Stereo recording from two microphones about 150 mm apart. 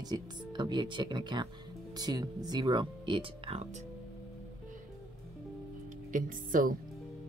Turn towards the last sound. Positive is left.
turn(degrees=-65)  # may be behind; listen again after turning